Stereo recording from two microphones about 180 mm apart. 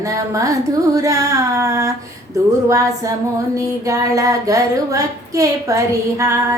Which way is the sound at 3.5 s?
15° right (ahead or behind).